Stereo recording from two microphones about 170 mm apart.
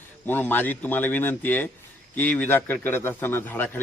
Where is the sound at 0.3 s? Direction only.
10° left (ahead or behind).